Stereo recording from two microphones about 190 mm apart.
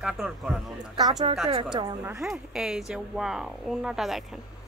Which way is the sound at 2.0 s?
5° right (ahead or behind).